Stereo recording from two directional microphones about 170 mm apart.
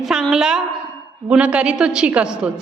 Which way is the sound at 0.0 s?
Centre (ahead or behind).